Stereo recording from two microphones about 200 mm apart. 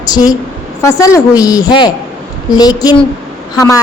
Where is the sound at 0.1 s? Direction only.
20° left (ahead or behind).